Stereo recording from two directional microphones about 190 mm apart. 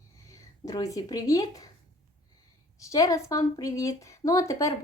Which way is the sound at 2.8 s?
15° left (ahead or behind).